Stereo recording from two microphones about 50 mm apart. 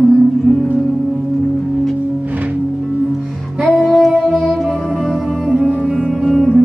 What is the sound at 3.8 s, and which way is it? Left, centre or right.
Child singing, centre.